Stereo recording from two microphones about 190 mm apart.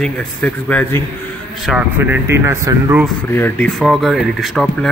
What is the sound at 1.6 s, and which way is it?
Speech, 5° right (ahead or behind).